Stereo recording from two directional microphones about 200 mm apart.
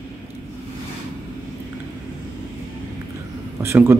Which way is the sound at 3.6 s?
10° right (ahead or behind).